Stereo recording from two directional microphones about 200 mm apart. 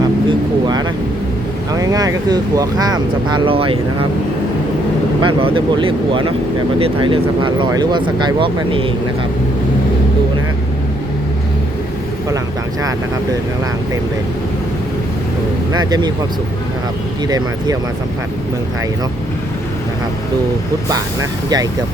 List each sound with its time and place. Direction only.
0.0 s vehicle: 20° right (ahead or behind)
1.7 s speech: 20° right (ahead or behind)
5.2 s speech: 25° right (ahead or behind)
15.8 s speech: 20° right (ahead or behind)
17.2 s speech: 20° right (ahead or behind)
20.9 s speech: 20° right (ahead or behind)